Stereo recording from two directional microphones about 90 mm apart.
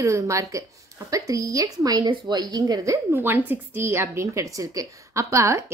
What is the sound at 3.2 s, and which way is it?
A woman's voice, 20° right (ahead or behind).